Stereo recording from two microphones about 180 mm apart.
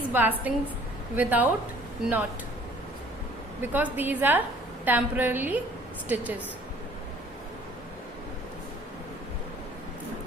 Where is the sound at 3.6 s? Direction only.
10° right (ahead or behind).